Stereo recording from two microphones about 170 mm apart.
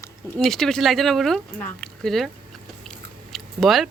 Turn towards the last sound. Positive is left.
turn(degrees=0)  # may be behind; listen again after turning